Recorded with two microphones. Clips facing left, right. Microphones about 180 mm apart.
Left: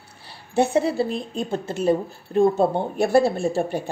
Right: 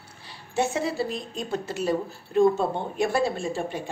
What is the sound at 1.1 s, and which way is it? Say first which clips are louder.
Speech: left 4 dB; 30° left (ahead or behind).